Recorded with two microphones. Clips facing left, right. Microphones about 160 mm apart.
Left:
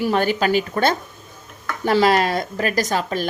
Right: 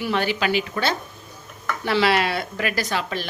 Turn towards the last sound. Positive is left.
turn(degrees=45)  # may be behind; listen again after turning